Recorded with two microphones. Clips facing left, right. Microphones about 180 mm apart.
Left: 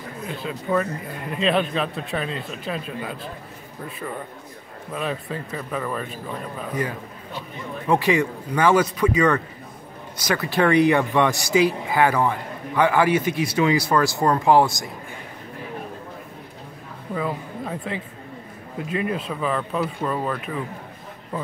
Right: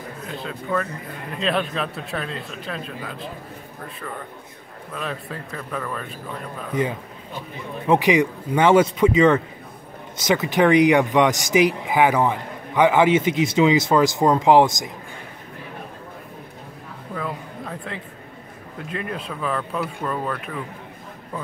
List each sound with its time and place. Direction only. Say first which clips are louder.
0.4 s speech: left 2 dB; 10° left (ahead or behind)
1.4 s speech: left 2 dB; centre (ahead or behind)
4.9 s speech: left 3 dB; centre (ahead or behind)
6.7 s speech: right 4 dB; 25° right (ahead or behind)
17.1 s a woman's voice: left 3 dB; 5° left (ahead or behind)